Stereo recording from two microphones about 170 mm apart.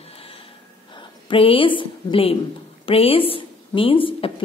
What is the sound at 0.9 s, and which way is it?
A woman's voice, 30° left (ahead or behind).